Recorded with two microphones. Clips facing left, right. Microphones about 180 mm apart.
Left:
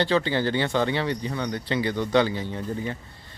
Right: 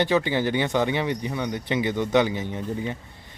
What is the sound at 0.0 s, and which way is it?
Speech, 15° right (ahead or behind).